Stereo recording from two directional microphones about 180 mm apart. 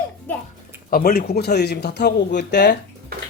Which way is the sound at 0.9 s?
55° left (ahead or behind).